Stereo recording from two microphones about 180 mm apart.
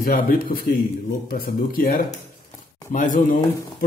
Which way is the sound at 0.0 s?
50° left (ahead or behind).